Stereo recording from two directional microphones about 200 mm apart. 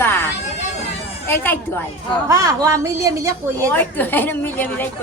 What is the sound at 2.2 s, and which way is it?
A woman's voice, 15° right (ahead or behind).